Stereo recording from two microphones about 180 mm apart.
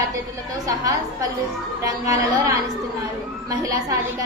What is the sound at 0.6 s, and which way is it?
Speech, 20° right (ahead or behind).